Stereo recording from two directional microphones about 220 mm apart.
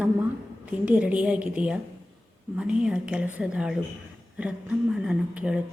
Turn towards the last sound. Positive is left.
turn(degrees=-5)  # may be behind; listen again after turning